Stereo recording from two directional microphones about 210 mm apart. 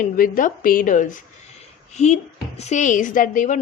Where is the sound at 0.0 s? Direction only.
40° left (ahead or behind).